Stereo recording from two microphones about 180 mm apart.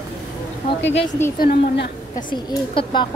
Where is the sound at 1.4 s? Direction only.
55° left (ahead or behind).